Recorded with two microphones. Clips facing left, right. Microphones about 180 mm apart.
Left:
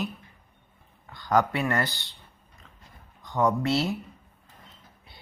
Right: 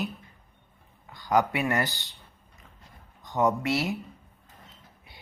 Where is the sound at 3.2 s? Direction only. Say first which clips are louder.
Even; 20° right (ahead or behind).